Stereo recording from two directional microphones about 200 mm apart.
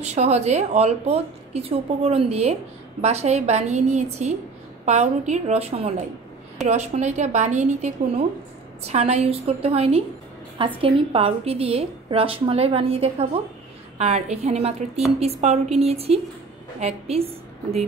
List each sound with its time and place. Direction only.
0.0 s a woman's voice: 35° right (ahead or behind)